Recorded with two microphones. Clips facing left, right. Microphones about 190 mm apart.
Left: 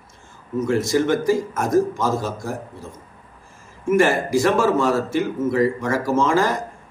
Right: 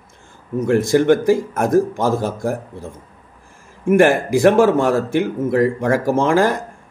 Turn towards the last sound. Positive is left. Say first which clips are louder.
# right 3 dB
turn(degrees=-55)  # may be behind; listen again after turning